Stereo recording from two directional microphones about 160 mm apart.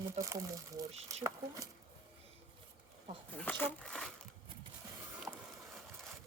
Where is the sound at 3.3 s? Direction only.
10° left (ahead or behind).